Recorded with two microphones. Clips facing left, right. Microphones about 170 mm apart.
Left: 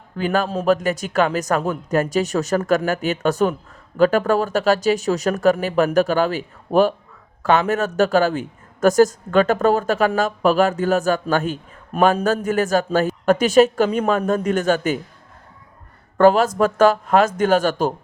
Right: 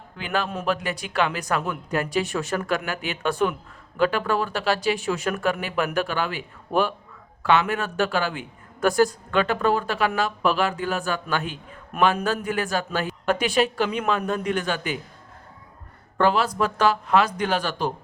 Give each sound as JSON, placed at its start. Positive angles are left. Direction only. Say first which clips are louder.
{"t": 0.2, "sound": "a man's voice", "louder": "left 7 dB", "side_deg": 45}
{"t": 16.1, "sound": "a man's voice", "louder": "left 7 dB", "side_deg": 45}